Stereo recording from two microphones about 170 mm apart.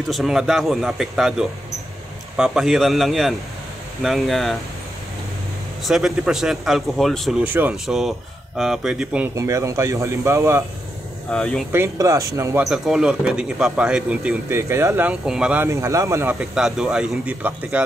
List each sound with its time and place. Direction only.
0.1 s speech: centre (ahead or behind)
5.9 s speech: centre (ahead or behind)
9.3 s speech: 20° right (ahead or behind)
11.3 s speech: 5° left (ahead or behind)
11.7 s speech: 15° right (ahead or behind)
12.6 s speech: centre (ahead or behind)
16.3 s speech: 5° right (ahead or behind)